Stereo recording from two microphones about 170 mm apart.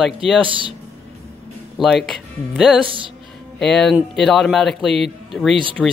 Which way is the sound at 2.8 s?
30° right (ahead or behind).